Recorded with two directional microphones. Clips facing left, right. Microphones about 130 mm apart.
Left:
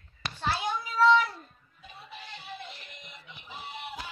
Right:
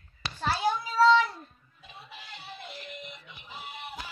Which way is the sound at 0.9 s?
25° right (ahead or behind).